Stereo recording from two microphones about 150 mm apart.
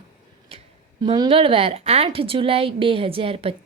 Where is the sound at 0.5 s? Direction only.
40° right (ahead or behind).